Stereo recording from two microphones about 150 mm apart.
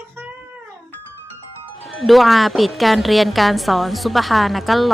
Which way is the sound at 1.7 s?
Centre (ahead or behind).